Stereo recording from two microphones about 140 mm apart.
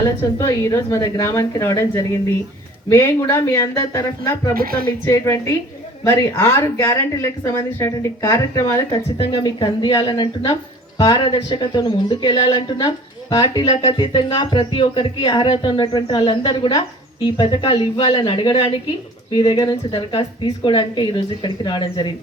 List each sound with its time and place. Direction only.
0.0 s a woman's voice: 20° left (ahead or behind)
4.5 s speech: 90° right
5.0 s a woman's voice: 20° left (ahead or behind)
8.9 s a woman's voice: 40° left (ahead or behind)